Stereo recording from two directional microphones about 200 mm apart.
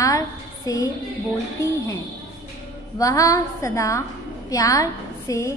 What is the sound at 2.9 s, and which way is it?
A woman's voice, 15° left (ahead or behind).